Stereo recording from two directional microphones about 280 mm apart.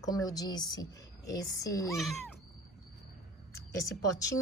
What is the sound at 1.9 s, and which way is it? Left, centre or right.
Speech, centre.